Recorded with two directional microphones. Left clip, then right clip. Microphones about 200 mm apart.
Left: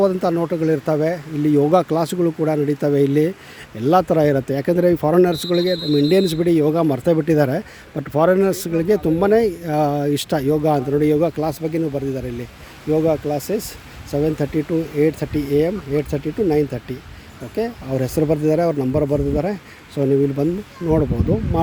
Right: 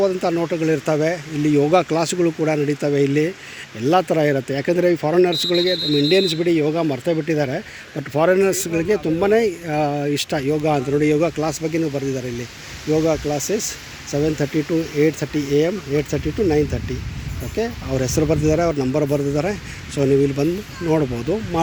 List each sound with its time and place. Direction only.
0.0 s speech: 25° left (ahead or behind)
7.9 s speech: 20° left (ahead or behind)